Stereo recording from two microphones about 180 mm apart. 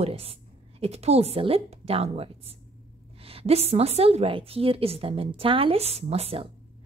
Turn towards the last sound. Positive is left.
turn(degrees=-35)  # may be behind; listen again after turning